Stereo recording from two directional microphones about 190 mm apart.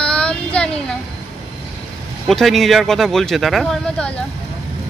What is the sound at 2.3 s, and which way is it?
Speech, centre (ahead or behind).